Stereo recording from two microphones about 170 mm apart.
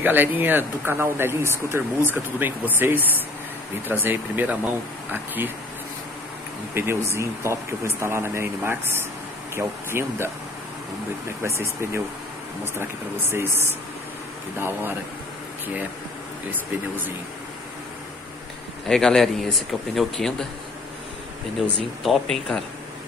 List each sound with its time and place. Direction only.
0.0 s speech: 10° right (ahead or behind)
6.7 s speech: 15° right (ahead or behind)
11.4 s speech: 15° right (ahead or behind)
18.9 s speech: 5° left (ahead or behind)
22.0 s speech: centre (ahead or behind)